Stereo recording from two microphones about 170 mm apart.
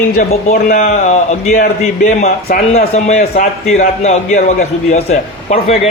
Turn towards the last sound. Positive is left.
turn(degrees=40)  # may be behind; listen again after turning